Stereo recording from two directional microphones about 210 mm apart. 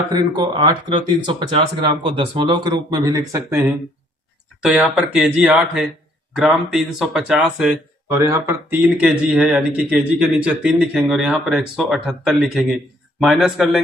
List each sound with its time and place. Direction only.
0.1 s speech: 20° right (ahead or behind); by 13.8 s 5° right (ahead or behind)